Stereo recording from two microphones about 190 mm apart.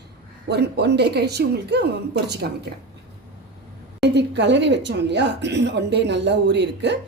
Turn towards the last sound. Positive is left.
turn(degrees=-65)  # may be behind; listen again after turning